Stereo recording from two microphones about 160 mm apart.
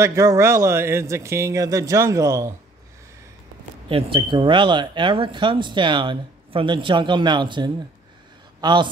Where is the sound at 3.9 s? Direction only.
30° right (ahead or behind).